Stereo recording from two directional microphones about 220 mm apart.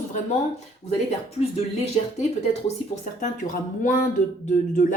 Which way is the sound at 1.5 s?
30° left (ahead or behind).